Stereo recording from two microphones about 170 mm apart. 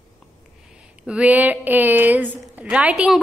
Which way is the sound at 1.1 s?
10° right (ahead or behind).